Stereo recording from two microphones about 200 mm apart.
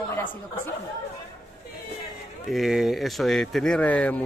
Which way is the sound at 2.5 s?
Centre (ahead or behind).